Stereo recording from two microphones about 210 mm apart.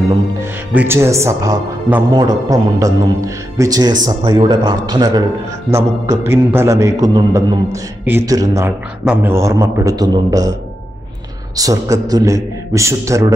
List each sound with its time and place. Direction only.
0.4 s speech: 10° right (ahead or behind)
11.5 s speech: 15° right (ahead or behind)